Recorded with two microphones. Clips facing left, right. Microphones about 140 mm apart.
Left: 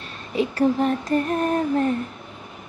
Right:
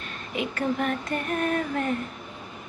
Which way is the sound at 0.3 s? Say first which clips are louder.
Left 7 dB; 35° left (ahead or behind).